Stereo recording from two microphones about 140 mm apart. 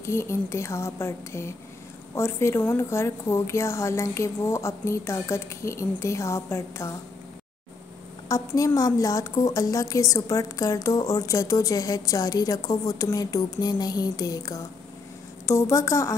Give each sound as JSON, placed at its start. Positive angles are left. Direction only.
{"t": 0.0, "sound": "a woman's voice", "side_deg": 20}
{"t": 8.3, "sound": "a woman's voice", "side_deg": 25}